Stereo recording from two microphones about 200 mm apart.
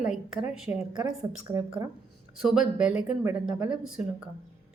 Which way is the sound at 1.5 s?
15° right (ahead or behind).